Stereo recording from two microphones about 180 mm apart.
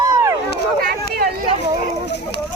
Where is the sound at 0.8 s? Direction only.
55° right (ahead or behind).